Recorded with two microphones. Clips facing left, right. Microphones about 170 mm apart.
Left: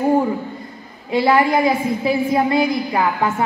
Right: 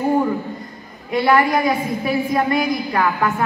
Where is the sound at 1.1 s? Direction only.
30° left (ahead or behind).